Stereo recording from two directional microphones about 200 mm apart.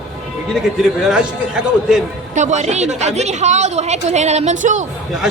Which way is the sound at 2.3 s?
35° right (ahead or behind).